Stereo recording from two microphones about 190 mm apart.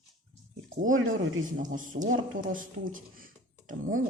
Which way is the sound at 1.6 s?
45° right (ahead or behind).